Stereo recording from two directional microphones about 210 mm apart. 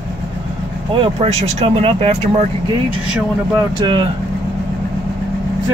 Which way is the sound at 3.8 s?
20° right (ahead or behind).